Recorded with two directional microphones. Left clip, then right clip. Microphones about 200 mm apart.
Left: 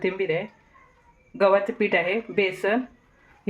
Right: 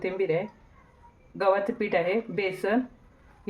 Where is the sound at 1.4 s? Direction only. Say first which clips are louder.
Left 5 dB; 40° left (ahead or behind).